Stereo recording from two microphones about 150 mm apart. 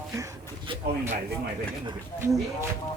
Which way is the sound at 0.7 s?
35° right (ahead or behind).